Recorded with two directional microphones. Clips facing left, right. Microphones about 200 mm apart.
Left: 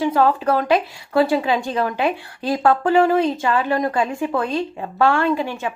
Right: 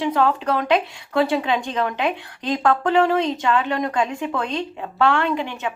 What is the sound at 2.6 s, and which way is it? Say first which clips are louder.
A woman's voice: left 2 dB; 10° left (ahead or behind).